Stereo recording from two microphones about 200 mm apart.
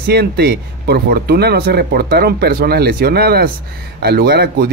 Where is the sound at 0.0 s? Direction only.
55° right (ahead or behind).